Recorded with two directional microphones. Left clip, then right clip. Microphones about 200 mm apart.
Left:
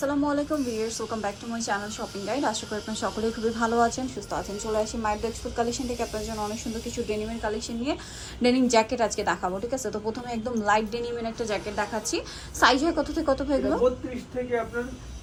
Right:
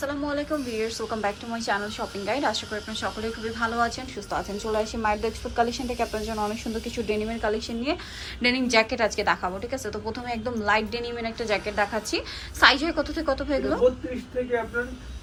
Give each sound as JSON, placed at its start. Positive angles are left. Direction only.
{"t": 0.0, "sound": "a woman's voice", "side_deg": 20}
{"t": 8.4, "sound": "a woman's voice", "side_deg": 20}